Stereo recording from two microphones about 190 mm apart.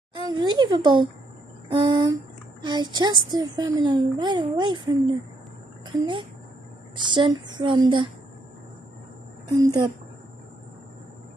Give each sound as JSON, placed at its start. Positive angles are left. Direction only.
{"t": 0.2, "sound": "a sound", "side_deg": -25}
{"t": 1.7, "sound": "a woman's voice", "side_deg": -25}
{"t": 9.6, "sound": "a woman's voice", "side_deg": -20}